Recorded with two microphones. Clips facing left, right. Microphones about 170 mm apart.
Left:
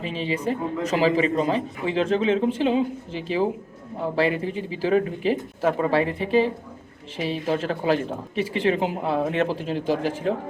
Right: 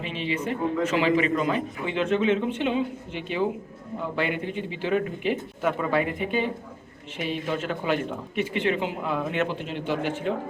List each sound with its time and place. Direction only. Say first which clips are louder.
0.0 s a man's voice: left 3 dB; 35° left (ahead or behind)